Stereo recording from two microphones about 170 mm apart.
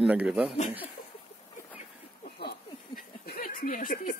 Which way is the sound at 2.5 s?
65° left (ahead or behind).